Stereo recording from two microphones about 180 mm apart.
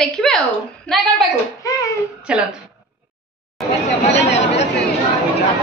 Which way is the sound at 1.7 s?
20° left (ahead or behind).